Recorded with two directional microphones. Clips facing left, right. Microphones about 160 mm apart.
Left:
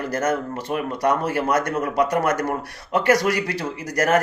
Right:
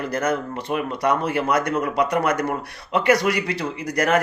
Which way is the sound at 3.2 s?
20° right (ahead or behind).